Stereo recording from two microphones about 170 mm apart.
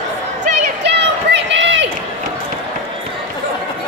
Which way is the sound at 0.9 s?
90° right.